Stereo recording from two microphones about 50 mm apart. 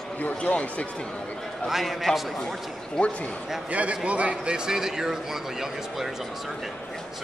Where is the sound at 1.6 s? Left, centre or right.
Centre.